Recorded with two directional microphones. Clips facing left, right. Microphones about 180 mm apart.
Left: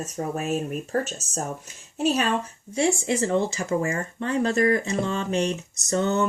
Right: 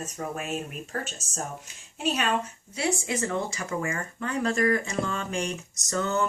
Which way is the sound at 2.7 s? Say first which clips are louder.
Left 5 dB; 25° left (ahead or behind).